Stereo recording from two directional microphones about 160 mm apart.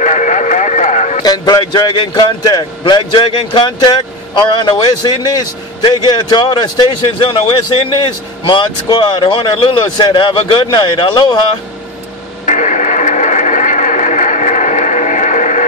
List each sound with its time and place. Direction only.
0.0 s a sound: 50° left (ahead or behind)
1.2 s a man's voice: 25° left (ahead or behind)
12.4 s radio: 50° left (ahead or behind)